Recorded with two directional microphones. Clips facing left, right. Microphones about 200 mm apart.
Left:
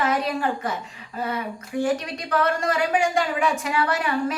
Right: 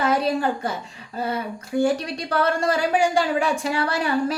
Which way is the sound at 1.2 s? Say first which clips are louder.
Right 2 dB; 30° right (ahead or behind).